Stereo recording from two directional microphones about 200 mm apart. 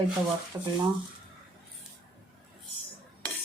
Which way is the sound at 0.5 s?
15° right (ahead or behind).